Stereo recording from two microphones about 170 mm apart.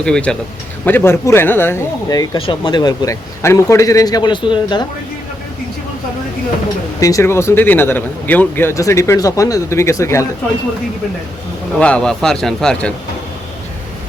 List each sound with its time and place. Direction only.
0.0 s speech: 5° left (ahead or behind); by 4.9 s 25° left (ahead or behind)
7.0 s speech: 20° left (ahead or behind)
11.8 s speech: 5° left (ahead or behind)